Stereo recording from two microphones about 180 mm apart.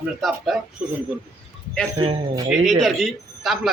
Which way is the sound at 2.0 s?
25° right (ahead or behind).